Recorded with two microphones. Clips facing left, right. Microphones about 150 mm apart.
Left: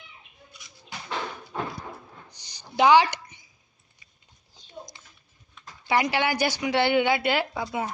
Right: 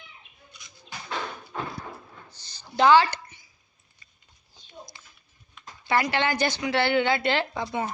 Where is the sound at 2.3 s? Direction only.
15° left (ahead or behind).